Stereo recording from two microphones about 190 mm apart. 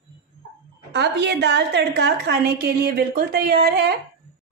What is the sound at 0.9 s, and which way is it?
A woman's voice, 65° right (ahead or behind).